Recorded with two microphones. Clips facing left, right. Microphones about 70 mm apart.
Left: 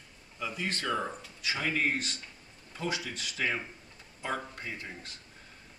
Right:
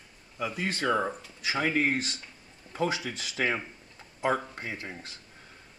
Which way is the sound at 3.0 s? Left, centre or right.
Centre.